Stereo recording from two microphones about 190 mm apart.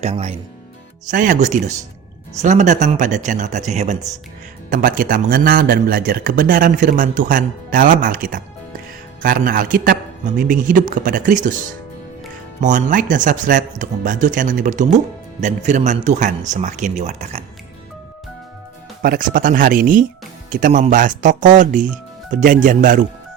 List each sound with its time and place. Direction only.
0.0 s a man's voice: 35° right (ahead or behind)
12.5 s speech: 40° right (ahead or behind)
19.0 s a man's voice: 45° right (ahead or behind)